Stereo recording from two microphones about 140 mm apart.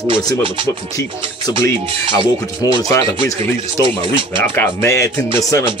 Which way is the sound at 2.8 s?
25° left (ahead or behind).